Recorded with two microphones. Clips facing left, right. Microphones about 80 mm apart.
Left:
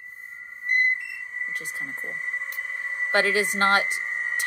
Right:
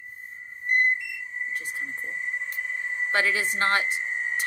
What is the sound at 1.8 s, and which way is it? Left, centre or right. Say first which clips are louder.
Speech: even; left.